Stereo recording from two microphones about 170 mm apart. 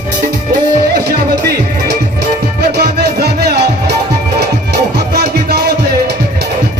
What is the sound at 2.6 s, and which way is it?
Music, 75° right (ahead or behind).